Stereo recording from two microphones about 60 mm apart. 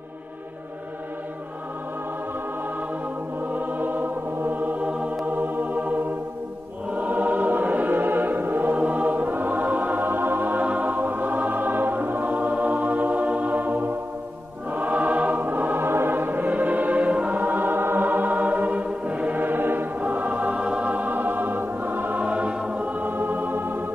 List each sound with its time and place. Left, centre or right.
3.5 s music: right
6.9 s choir: right
8.7 s music: right